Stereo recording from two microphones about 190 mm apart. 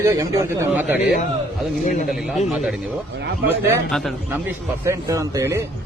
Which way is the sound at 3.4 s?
65° right (ahead or behind).